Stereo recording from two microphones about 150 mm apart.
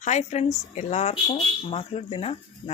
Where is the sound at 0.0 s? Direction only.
50° left (ahead or behind).